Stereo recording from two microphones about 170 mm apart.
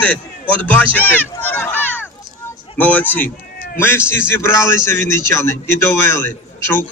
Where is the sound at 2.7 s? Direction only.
10° left (ahead or behind).